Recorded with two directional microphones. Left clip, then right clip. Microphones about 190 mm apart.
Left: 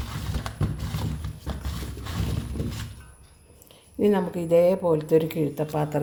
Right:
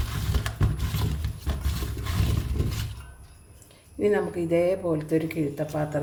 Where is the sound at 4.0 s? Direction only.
35° left (ahead or behind).